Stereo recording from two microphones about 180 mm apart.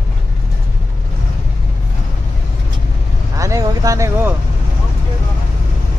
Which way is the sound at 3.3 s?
20° right (ahead or behind).